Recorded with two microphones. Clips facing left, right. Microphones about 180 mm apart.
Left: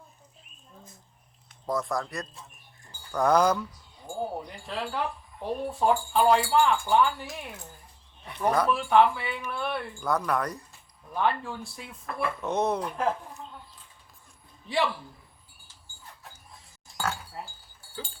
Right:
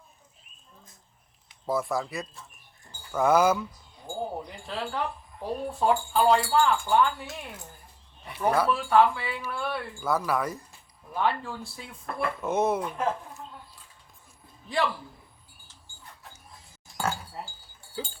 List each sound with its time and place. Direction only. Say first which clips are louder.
1.6 s speech: right 1 dB; 5° right (ahead or behind)
14.7 s speech: even; centre (ahead or behind)